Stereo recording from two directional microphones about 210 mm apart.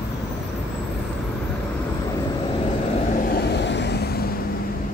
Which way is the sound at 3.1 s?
45° left (ahead or behind).